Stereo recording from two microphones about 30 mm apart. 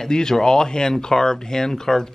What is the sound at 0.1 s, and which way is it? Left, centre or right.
Speech, left.